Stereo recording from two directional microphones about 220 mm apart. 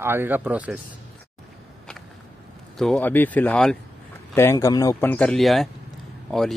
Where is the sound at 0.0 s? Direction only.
10° right (ahead or behind).